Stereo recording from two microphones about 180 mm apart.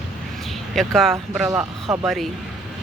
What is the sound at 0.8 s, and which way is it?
Speech, centre (ahead or behind).